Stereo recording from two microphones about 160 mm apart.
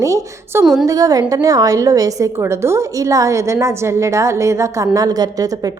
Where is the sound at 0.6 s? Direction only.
Centre (ahead or behind).